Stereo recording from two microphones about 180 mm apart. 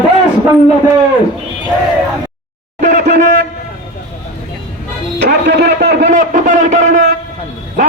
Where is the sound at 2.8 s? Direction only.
45° right (ahead or behind).